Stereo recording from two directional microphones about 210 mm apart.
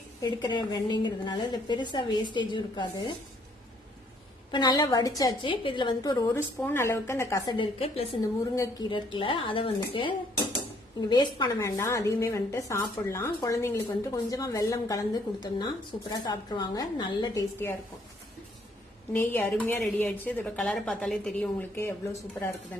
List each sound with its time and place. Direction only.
0.2 s a woman's voice: 20° left (ahead or behind)
4.5 s a woman's voice: 20° left (ahead or behind)
19.1 s a woman's voice: 10° left (ahead or behind)